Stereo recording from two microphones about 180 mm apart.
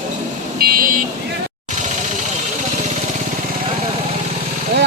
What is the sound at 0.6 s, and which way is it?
Vehicle, 55° right (ahead or behind).